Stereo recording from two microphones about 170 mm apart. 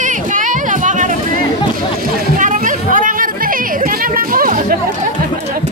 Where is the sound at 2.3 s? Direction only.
50° right (ahead or behind).